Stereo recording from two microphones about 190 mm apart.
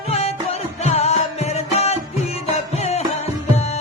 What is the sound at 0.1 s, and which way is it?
Music, 35° left (ahead or behind).